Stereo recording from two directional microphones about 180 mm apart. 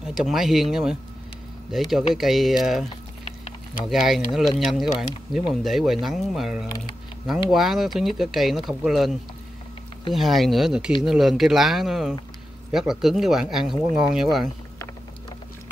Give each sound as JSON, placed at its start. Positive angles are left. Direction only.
{"t": 0.0, "sound": "speech", "side_deg": -5}
{"t": 3.3, "sound": "a sound", "side_deg": 35}
{"t": 3.8, "sound": "speech", "side_deg": 0}